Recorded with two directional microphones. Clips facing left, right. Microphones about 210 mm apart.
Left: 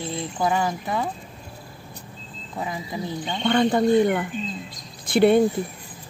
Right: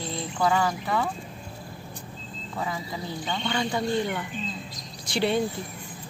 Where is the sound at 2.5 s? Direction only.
20° left (ahead or behind).